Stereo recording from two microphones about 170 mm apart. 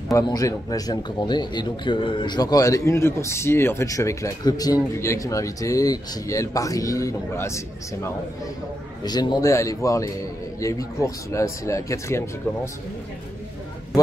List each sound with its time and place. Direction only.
0.1 s speech: 20° left (ahead or behind)